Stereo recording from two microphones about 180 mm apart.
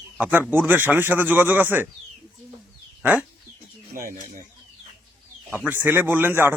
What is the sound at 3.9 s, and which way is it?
Speech, 50° right (ahead or behind).